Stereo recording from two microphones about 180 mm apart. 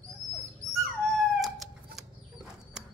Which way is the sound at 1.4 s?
Centre (ahead or behind).